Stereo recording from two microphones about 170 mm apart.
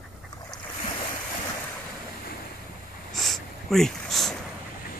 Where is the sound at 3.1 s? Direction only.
Centre (ahead or behind).